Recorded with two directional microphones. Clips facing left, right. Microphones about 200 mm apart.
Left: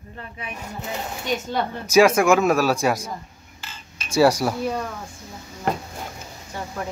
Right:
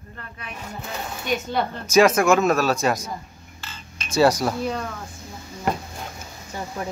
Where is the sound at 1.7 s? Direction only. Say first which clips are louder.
Left 1 dB; 10° left (ahead or behind).